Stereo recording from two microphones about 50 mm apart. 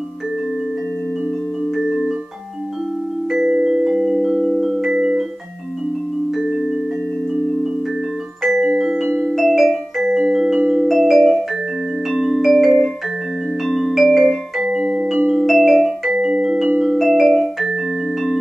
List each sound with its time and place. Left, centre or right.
3.3 s music: centre
8.5 s music: centre
14.6 s music: centre
15.3 s music: centre
16.1 s music: centre
16.8 s music: centre